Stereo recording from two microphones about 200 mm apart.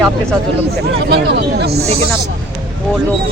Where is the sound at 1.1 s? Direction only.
55° right (ahead or behind).